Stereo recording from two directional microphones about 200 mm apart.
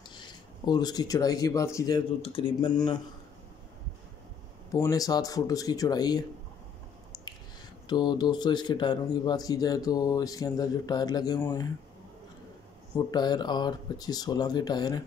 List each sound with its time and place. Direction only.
0.1 s speech: 20° left (ahead or behind)
4.7 s speech: 15° left (ahead or behind)
7.9 s speech: 20° left (ahead or behind)
12.9 s speech: 20° left (ahead or behind)